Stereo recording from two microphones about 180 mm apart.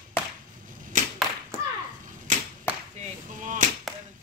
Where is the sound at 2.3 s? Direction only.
45° right (ahead or behind).